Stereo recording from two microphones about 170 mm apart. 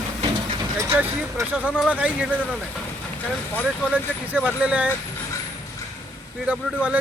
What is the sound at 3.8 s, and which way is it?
Speech, 10° right (ahead or behind).